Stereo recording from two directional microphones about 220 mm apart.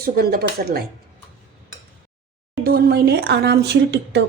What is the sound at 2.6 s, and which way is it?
Speech, 45° right (ahead or behind).